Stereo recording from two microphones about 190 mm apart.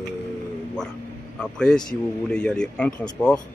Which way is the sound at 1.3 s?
5° left (ahead or behind).